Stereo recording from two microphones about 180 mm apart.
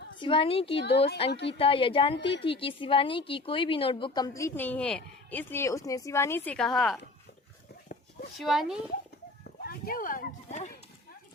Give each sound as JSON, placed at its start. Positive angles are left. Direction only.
{"t": 0.2, "sound": "a woman's voice", "side_deg": 30}
{"t": 0.8, "sound": "speech", "side_deg": 70}
{"t": 1.5, "sound": "a woman's voice", "side_deg": 30}
{"t": 8.4, "sound": "speech", "side_deg": 0}
{"t": 9.4, "sound": "speech", "side_deg": 55}